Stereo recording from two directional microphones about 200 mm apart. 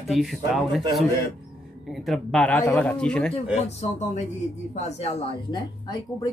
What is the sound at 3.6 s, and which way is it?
A woman's voice, 35° left (ahead or behind).